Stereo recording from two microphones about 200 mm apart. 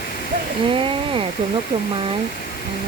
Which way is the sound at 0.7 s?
25° right (ahead or behind).